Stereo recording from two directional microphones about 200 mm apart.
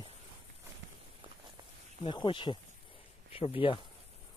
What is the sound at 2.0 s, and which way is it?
Speech, 25° left (ahead or behind).